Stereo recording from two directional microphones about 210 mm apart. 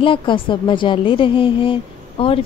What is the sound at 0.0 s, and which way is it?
A woman's voice, 25° left (ahead or behind).